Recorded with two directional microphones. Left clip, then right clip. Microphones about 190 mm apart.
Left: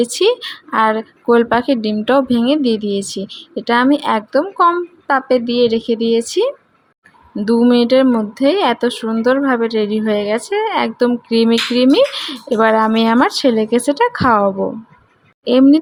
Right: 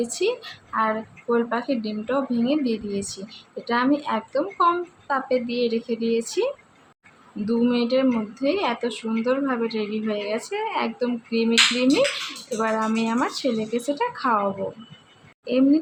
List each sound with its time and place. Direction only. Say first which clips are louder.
0.0 s a woman's voice: left 10 dB; 50° left (ahead or behind)
15.4 s a woman's voice: left 9 dB; 45° left (ahead or behind)